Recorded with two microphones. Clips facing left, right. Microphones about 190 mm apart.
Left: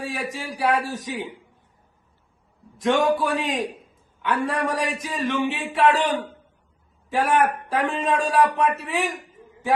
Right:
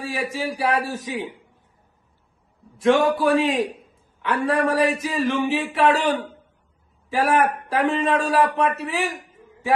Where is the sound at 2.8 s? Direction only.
Centre (ahead or behind).